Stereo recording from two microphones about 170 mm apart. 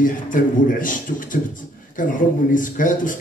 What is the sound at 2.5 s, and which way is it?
Speech, 50° left (ahead or behind).